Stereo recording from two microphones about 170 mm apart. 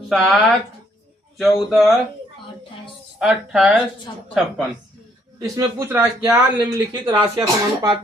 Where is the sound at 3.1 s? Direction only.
5° right (ahead or behind).